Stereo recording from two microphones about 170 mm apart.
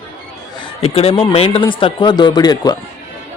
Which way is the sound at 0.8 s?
35° left (ahead or behind).